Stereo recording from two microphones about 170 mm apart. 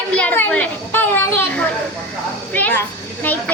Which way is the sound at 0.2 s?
10° left (ahead or behind).